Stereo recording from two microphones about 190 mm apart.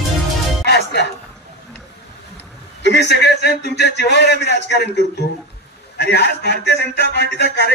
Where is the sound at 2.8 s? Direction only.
65° left (ahead or behind).